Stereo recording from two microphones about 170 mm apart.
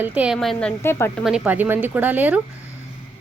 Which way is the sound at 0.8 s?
15° left (ahead or behind).